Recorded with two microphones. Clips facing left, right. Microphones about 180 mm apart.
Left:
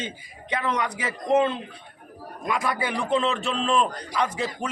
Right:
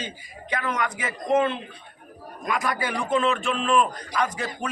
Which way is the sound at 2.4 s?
25° left (ahead or behind).